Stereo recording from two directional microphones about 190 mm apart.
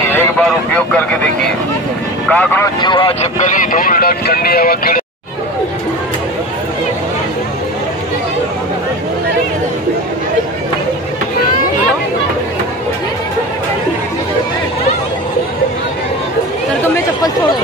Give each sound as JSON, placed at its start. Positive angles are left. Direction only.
{"t": 0.1, "sound": "vehicle", "side_deg": 5}
{"t": 2.2, "sound": "speech", "side_deg": 5}
{"t": 2.6, "sound": "speech", "side_deg": 25}